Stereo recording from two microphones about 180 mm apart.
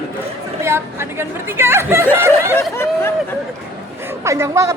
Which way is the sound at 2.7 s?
15° left (ahead or behind).